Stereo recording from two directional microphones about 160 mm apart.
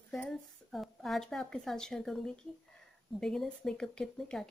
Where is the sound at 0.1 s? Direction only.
Centre (ahead or behind).